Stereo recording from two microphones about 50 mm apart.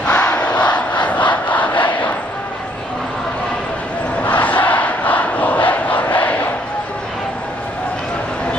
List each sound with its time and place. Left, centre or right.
0.0 s battle cry: left
4.2 s battle cry: left